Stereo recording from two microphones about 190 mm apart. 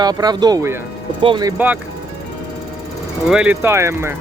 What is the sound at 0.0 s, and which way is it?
Speech, 20° right (ahead or behind).